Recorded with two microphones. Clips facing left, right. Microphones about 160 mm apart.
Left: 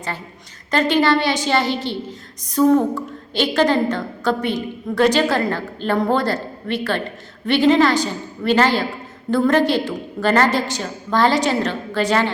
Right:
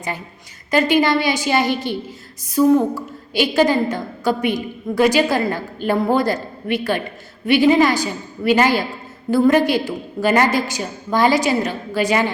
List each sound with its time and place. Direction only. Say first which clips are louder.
0.7 s a woman's voice: right 1 dB; 10° right (ahead or behind)